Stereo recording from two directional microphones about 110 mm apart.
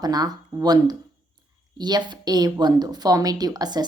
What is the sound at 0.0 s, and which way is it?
A woman's voice, 35° right (ahead or behind).